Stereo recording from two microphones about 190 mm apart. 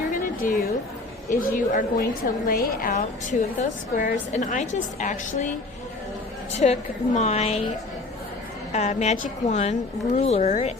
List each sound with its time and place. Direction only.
0.1 s a sound: 45° left (ahead or behind)
1.3 s a woman's voice: 45° left (ahead or behind)
6.5 s a woman's voice: 35° left (ahead or behind)
8.7 s a woman's voice: 35° left (ahead or behind)